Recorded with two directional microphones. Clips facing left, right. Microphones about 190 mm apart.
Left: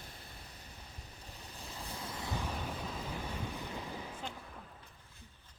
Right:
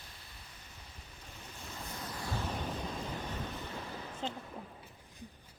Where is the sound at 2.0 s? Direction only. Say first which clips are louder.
Right 1 dB; 20° left (ahead or behind).